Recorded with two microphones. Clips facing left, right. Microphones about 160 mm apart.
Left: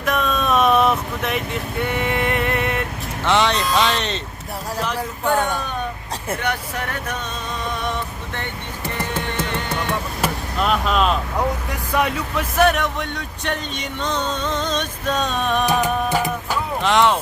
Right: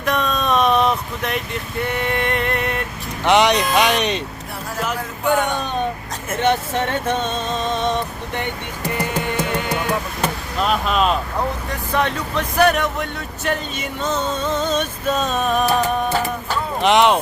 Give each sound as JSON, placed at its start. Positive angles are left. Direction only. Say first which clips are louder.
{"t": 0.0, "sound": "vehicle", "louder": "even", "side_deg": 0}
{"t": 1.8, "sound": "a sound", "louder": "even", "side_deg": 0}
{"t": 3.2, "sound": "speech", "louder": "right 3 dB", "side_deg": -15}
{"t": 6.4, "sound": "speech", "louder": "right 6 dB", "side_deg": -25}
{"t": 9.0, "sound": "music", "louder": "right 3 dB", "side_deg": -10}
{"t": 10.2, "sound": "chop", "louder": "even", "side_deg": 0}
{"t": 11.9, "sound": "speech", "louder": "even", "side_deg": 10}
{"t": 16.1, "sound": "music", "louder": "even", "side_deg": 10}
{"t": 16.8, "sound": "speech", "louder": "right 3 dB", "side_deg": -20}